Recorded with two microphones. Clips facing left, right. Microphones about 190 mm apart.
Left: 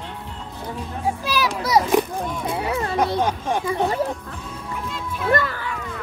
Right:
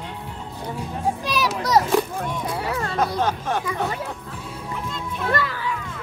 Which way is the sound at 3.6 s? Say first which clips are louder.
Left 4 dB; 30° left (ahead or behind).